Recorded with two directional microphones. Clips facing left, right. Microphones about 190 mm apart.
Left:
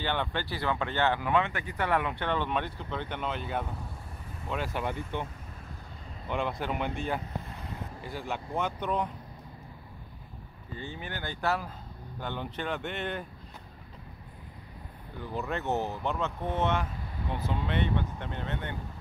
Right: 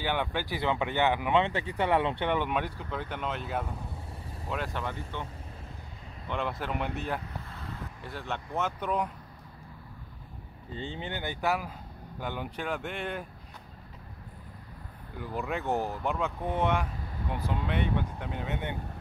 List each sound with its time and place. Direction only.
0.0 s speech: 10° right (ahead or behind)
4.7 s speech: 15° left (ahead or behind)
6.2 s speech: centre (ahead or behind)
7.5 s a sound: 20° left (ahead or behind)
8.0 s speech: centre (ahead or behind)
10.7 s speech: 25° right (ahead or behind); by 13.2 s 5° right (ahead or behind)
15.3 s speech: 10° right (ahead or behind)
18.5 s speech: 15° right (ahead or behind)